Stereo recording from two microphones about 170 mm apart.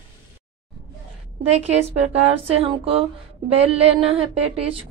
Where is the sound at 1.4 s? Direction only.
35° right (ahead or behind).